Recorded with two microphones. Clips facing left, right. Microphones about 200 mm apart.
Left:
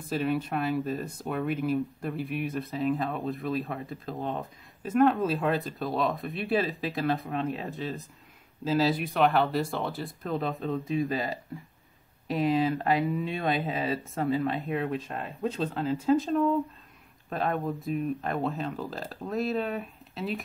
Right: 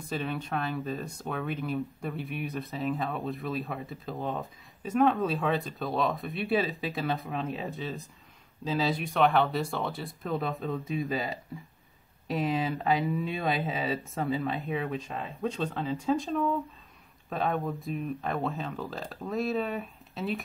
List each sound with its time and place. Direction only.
0.1 s speech: centre (ahead or behind)